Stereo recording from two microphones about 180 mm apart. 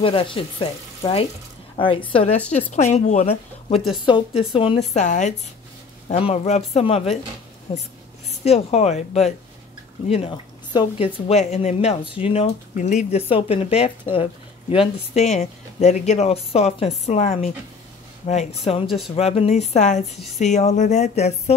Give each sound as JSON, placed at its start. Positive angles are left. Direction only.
{"t": 0.0, "sound": "a woman's voice", "side_deg": 30}
{"t": 3.9, "sound": "a woman's voice", "side_deg": 25}
{"t": 11.2, "sound": "a woman's voice", "side_deg": 40}